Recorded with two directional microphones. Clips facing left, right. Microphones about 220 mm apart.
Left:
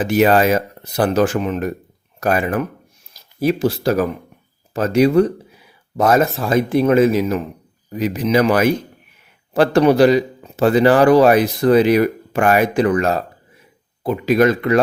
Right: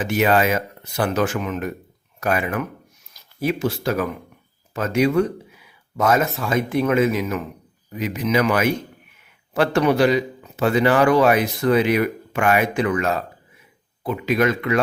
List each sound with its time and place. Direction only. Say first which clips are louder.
0.0 s a man's voice: left 5 dB; 35° left (ahead or behind)